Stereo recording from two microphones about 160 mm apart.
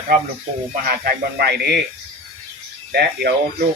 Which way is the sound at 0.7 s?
80° right.